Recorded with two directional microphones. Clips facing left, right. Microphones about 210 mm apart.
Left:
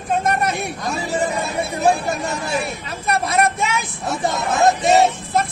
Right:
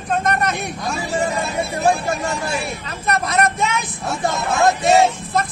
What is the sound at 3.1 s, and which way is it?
Speech, 10° left (ahead or behind).